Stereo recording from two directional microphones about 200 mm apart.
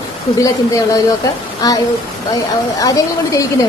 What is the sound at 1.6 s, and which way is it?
Speech, 20° left (ahead or behind).